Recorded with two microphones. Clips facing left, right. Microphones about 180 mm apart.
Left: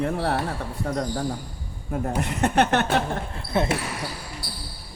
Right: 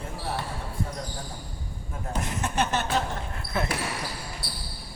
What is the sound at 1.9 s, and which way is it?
A woman's voice, 65° left (ahead or behind).